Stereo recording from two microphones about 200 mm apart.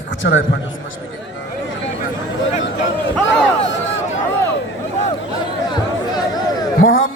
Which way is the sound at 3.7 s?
70° left (ahead or behind).